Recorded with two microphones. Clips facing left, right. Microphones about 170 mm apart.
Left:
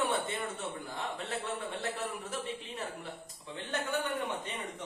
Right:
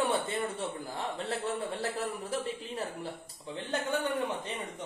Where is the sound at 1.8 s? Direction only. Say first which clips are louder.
Right 3 dB; 35° right (ahead or behind).